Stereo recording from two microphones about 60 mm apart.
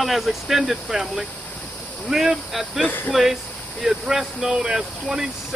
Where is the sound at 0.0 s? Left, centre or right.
Centre.